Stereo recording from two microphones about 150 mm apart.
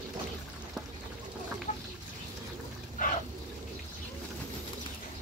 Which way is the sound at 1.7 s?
55° left (ahead or behind).